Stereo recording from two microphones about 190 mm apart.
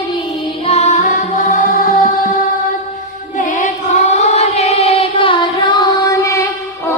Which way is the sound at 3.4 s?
40° left (ahead or behind).